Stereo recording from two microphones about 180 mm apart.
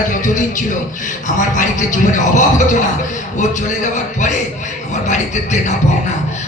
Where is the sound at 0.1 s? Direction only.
45° left (ahead or behind).